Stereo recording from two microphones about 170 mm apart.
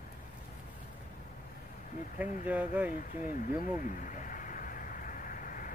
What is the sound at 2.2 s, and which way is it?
Speech, 10° right (ahead or behind).